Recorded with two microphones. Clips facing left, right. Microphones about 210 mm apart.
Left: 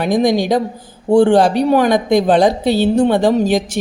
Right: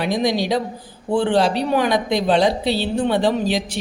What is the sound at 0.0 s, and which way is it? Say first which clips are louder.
A woman's voice: left 6 dB; 50° left (ahead or behind).